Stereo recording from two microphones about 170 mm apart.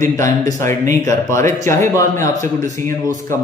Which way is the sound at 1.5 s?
15° left (ahead or behind).